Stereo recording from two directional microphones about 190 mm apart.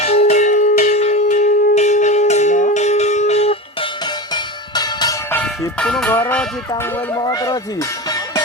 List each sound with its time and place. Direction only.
0.0 s a sound: 35° left (ahead or behind)
4.7 s music: 20° left (ahead or behind)
5.4 s speech: 5° left (ahead or behind)